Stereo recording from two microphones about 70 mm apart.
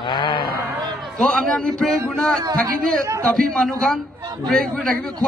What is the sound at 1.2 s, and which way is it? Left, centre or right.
A man's voice, centre.